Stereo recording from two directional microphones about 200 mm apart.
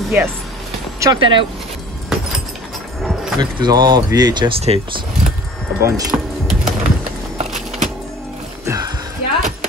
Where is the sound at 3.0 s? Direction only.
Centre (ahead or behind).